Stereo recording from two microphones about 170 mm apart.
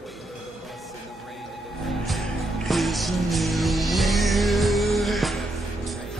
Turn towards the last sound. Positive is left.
turn(degrees=0)  # may be behind; listen again after turning